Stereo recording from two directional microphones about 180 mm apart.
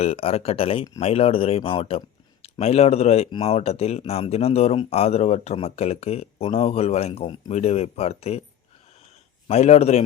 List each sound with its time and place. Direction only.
0.0 s speech: 35° left (ahead or behind)
9.5 s speech: 35° left (ahead or behind)